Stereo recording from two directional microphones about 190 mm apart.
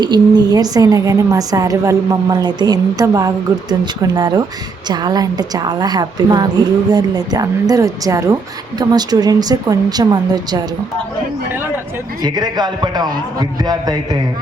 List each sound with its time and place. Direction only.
0.0 s a woman's voice: 20° right (ahead or behind)
12.2 s a woman's voice: 20° right (ahead or behind)